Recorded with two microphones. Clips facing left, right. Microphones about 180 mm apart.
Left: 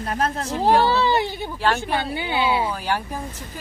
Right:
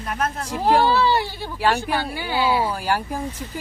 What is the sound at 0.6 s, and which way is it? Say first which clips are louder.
Speech: even; 20° left (ahead or behind).